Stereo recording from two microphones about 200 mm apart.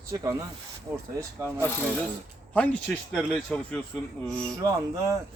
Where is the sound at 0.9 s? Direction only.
10° right (ahead or behind).